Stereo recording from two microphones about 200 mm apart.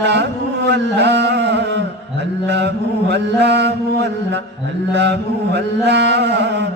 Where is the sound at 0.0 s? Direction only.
60° right (ahead or behind).